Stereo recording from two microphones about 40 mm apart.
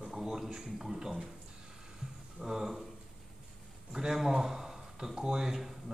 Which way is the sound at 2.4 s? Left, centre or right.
Centre.